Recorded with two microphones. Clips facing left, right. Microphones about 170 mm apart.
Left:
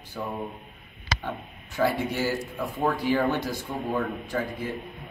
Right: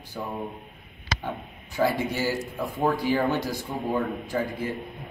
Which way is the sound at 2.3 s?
Centre (ahead or behind).